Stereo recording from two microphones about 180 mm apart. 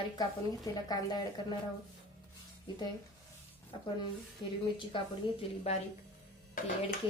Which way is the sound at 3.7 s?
25° left (ahead or behind).